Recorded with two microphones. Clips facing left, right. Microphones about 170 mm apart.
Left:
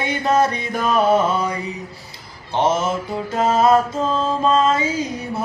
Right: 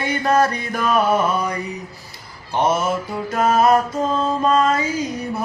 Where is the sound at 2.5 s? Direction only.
25° left (ahead or behind).